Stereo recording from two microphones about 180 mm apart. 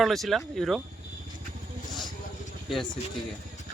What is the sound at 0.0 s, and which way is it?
Speech, centre (ahead or behind).